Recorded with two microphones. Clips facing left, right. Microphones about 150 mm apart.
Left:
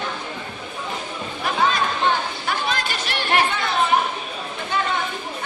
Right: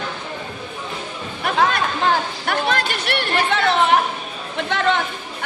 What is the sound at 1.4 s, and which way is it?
Chatter, 60° right (ahead or behind).